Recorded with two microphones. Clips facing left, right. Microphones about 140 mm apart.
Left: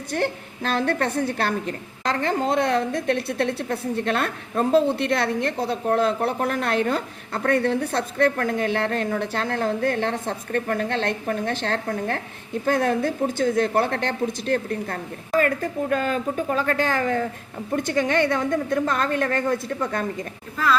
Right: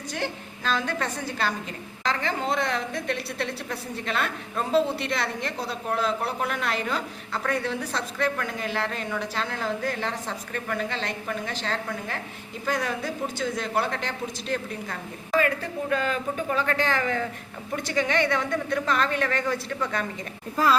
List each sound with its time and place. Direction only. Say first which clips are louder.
0.1 s a woman's voice: left 7 dB; 60° left (ahead or behind)